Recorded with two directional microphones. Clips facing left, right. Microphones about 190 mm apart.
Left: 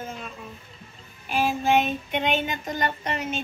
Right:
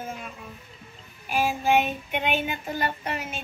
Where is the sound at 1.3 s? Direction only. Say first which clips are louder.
Left 1 dB; 10° right (ahead or behind).